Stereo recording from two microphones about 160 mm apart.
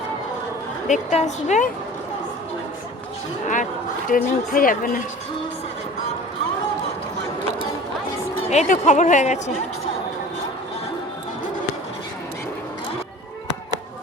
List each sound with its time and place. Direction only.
0.9 s speech: 50° left (ahead or behind)
4.1 s speech: 60° left (ahead or behind)
8.4 s speech: 50° left (ahead or behind)